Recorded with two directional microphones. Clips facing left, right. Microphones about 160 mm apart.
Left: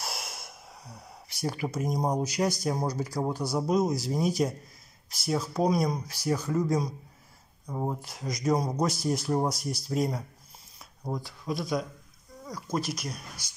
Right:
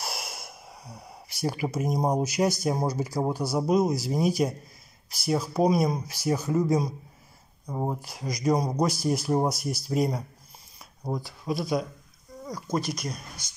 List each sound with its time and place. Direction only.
0.0 s gasp: centre (ahead or behind)
2.1 s speech: 5° right (ahead or behind)
6.6 s speech: 5° right (ahead or behind)
7.6 s speech: 15° right (ahead or behind)
8.0 s speech: centre (ahead or behind)